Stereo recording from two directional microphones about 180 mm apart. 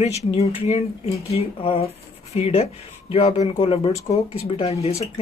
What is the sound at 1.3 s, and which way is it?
Speech, 30° left (ahead or behind).